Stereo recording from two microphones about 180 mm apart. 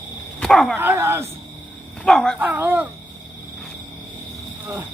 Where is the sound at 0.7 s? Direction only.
15° right (ahead or behind).